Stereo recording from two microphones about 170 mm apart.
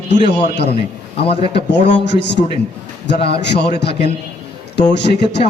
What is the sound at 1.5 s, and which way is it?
Speech, 85° left.